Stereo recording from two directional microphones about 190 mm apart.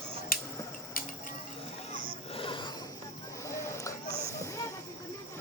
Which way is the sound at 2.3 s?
30° left (ahead or behind).